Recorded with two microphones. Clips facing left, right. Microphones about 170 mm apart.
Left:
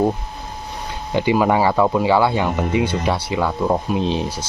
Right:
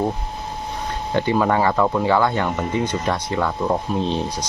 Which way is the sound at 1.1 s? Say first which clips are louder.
Left 2 dB; 15° left (ahead or behind).